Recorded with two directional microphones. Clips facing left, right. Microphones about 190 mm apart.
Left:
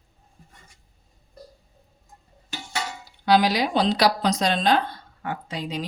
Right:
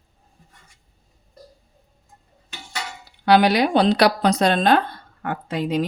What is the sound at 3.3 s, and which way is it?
Speech, 60° right (ahead or behind).